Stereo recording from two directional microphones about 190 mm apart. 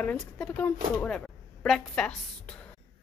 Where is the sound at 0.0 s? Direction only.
5° left (ahead or behind).